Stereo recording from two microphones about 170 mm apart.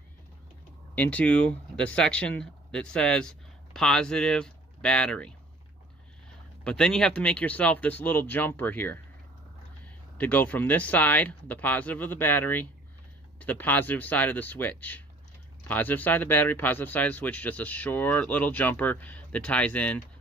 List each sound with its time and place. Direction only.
0.9 s speech: 10° left (ahead or behind)
6.6 s speech: 5° left (ahead or behind)
10.1 s speech: 10° left (ahead or behind)